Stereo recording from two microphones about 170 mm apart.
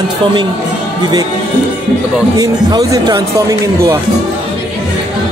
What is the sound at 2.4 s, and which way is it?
Speech, 20° right (ahead or behind).